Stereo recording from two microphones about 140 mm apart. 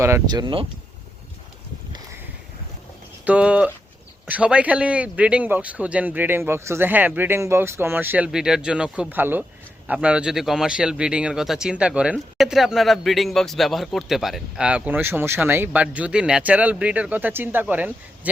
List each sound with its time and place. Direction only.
0.3 s speech: 30° right (ahead or behind)
3.2 s speech: 10° right (ahead or behind)